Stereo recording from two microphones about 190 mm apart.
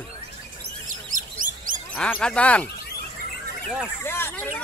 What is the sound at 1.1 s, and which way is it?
Bird, 45° right (ahead or behind).